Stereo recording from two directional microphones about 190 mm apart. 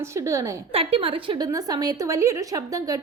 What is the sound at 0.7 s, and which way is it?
A woman's voice, 30° right (ahead or behind).